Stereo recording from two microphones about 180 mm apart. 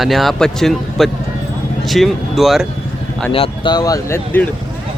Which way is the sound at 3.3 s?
30° left (ahead or behind).